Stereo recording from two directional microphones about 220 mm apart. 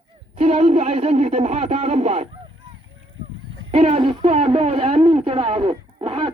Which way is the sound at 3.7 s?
25° right (ahead or behind).